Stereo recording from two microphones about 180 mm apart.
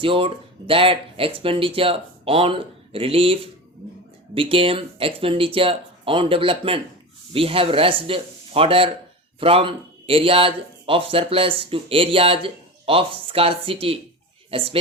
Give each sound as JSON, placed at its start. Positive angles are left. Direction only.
{"t": 0.0, "sound": "speech", "side_deg": -30}